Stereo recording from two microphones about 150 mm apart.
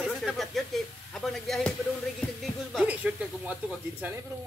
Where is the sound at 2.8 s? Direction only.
10° right (ahead or behind).